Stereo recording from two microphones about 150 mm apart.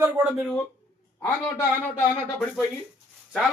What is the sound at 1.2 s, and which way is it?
Speech, 10° left (ahead or behind).